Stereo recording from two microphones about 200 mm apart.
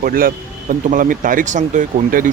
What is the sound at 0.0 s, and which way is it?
Speech, 45° right (ahead or behind).